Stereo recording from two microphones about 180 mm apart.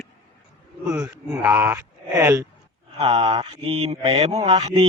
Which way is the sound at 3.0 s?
35° right (ahead or behind).